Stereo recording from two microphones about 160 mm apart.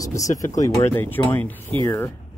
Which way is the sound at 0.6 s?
20° left (ahead or behind).